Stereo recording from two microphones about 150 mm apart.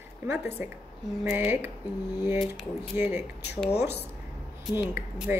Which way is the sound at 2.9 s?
15° right (ahead or behind).